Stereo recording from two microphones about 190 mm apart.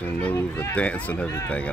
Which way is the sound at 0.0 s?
10° left (ahead or behind).